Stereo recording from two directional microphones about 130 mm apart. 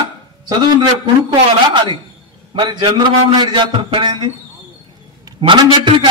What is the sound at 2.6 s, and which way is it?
A man's voice, 30° right (ahead or behind).